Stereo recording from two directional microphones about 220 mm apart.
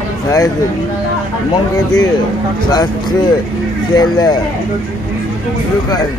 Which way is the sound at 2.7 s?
20° left (ahead or behind).